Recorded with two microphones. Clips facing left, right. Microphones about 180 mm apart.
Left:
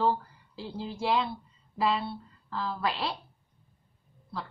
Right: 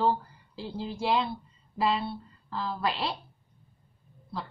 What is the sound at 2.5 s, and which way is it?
Speech, centre (ahead or behind).